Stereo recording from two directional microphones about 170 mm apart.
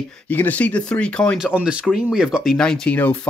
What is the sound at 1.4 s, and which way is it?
Speech, 5° right (ahead or behind).